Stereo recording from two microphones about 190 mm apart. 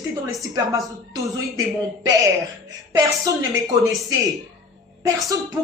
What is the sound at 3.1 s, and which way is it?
Speech, 15° right (ahead or behind).